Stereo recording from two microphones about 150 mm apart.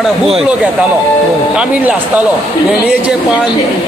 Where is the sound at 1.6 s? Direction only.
10° right (ahead or behind).